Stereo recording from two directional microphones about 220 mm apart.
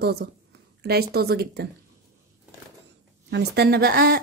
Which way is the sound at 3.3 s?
50° right (ahead or behind).